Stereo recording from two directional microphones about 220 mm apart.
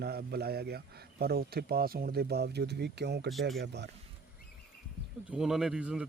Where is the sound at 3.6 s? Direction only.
50° right (ahead or behind).